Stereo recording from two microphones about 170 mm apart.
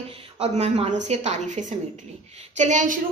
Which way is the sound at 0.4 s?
40° right (ahead or behind).